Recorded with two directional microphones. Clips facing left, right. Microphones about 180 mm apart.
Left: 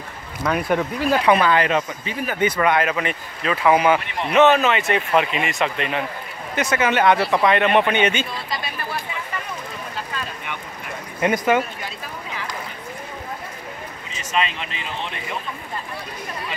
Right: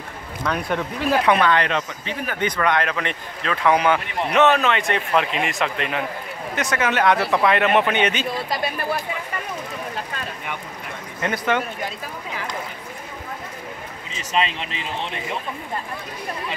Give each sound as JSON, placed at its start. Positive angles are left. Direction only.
{"t": 0.4, "sound": "speech", "side_deg": 5}
{"t": 8.4, "sound": "a sound", "side_deg": -50}
{"t": 11.1, "sound": "speech", "side_deg": 15}
{"t": 14.1, "sound": "speech", "side_deg": -30}